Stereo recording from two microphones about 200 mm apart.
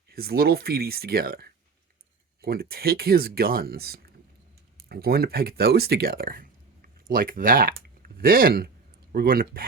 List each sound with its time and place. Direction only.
0.1 s speech: 50° right (ahead or behind)